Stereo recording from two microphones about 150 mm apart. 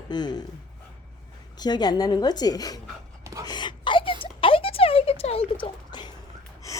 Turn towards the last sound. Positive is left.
turn(degrees=30)  # may be behind; listen again after turning